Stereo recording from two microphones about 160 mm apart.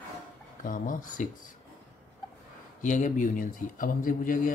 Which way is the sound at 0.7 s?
55° left (ahead or behind).